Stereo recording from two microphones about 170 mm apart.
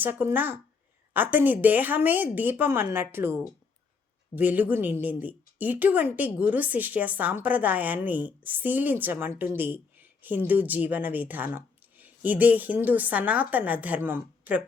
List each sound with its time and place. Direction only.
0.0 s speech: 10° right (ahead or behind)